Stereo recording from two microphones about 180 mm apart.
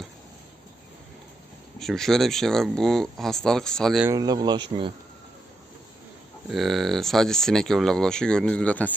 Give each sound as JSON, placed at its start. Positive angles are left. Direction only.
{"t": 1.8, "sound": "speech", "side_deg": 0}
{"t": 4.0, "sound": "speech", "side_deg": -20}
{"t": 6.5, "sound": "speech", "side_deg": 0}